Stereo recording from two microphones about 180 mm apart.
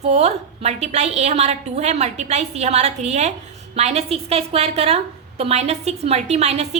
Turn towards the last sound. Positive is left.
turn(degrees=-40)  # may be behind; listen again after turning